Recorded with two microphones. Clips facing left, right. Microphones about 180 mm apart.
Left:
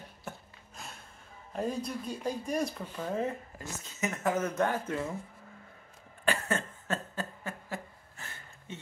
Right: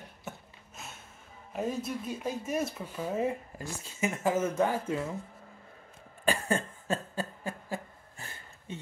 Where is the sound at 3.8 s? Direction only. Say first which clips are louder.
Right 2 dB; 30° right (ahead or behind).